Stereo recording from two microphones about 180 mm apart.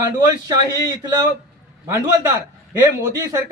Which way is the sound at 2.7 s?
15° right (ahead or behind).